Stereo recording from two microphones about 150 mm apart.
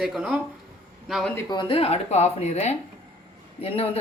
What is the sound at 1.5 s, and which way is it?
Speech, 35° left (ahead or behind).